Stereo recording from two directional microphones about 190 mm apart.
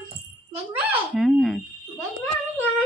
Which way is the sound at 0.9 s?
Centre (ahead or behind).